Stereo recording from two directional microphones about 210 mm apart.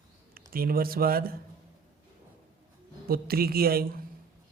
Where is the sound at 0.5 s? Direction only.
45° right (ahead or behind).